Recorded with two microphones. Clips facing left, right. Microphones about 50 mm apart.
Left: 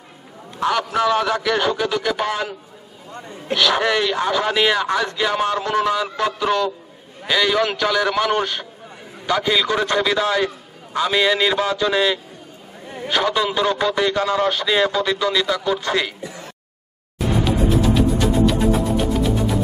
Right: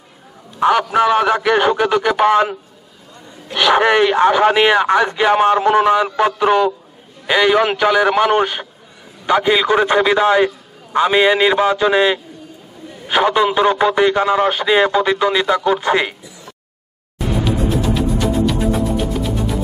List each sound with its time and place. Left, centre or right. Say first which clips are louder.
0.6 s speech: right 6 dB; right
3.5 s speech: right 5 dB; right
16.2 s a sound: left 5 dB; left
17.5 s music: even; centre